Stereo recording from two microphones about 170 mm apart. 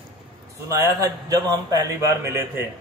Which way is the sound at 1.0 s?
20° right (ahead or behind).